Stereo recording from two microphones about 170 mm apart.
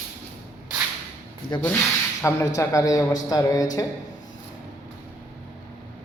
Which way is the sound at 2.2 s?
15° left (ahead or behind).